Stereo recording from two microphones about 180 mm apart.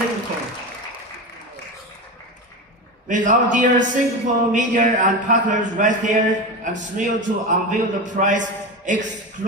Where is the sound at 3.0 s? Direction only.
45° right (ahead or behind).